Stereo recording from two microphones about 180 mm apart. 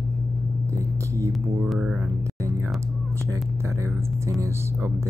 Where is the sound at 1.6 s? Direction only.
5° right (ahead or behind).